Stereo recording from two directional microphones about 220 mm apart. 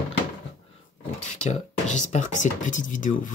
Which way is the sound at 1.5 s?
35° left (ahead or behind).